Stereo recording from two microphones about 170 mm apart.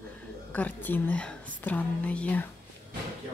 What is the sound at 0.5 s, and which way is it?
A woman's voice, 10° left (ahead or behind).